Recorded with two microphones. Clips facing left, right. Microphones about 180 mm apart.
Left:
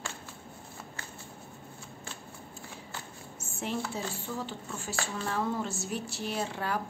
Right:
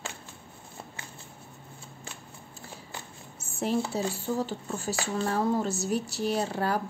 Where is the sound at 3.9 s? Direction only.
40° right (ahead or behind).